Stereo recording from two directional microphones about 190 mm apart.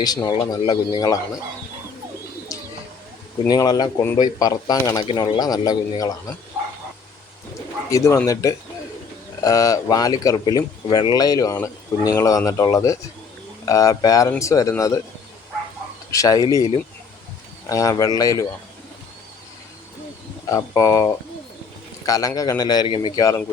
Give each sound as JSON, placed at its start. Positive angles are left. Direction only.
{"t": 0.0, "sound": "speech", "side_deg": 20}
{"t": 2.5, "sound": "bird", "side_deg": 15}
{"t": 3.4, "sound": "speech", "side_deg": 20}
{"t": 7.9, "sound": "speech", "side_deg": 15}
{"t": 16.1, "sound": "speech", "side_deg": 20}
{"t": 20.5, "sound": "speech", "side_deg": 15}